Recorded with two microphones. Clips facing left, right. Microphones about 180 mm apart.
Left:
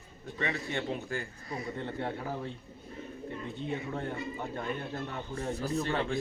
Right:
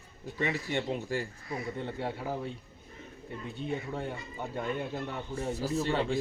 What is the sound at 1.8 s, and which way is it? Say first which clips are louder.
Speech: even; 10° right (ahead or behind).